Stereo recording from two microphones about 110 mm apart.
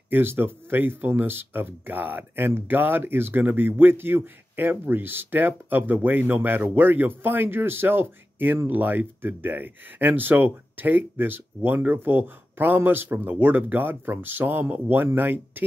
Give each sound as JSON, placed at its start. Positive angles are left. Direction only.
{"t": 0.1, "sound": "speech", "side_deg": -20}